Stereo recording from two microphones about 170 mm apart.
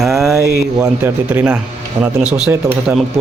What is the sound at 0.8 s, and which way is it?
Speech, 10° right (ahead or behind).